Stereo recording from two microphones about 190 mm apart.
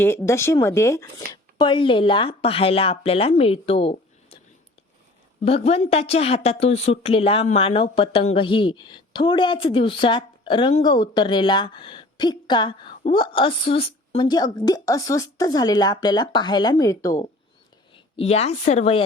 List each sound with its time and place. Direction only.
0.0 s speech: 15° left (ahead or behind); by 4.4 s 30° left (ahead or behind)
5.4 s speech: 35° left (ahead or behind); by 17.2 s 15° left (ahead or behind)
17.9 s a woman's voice: 35° left (ahead or behind)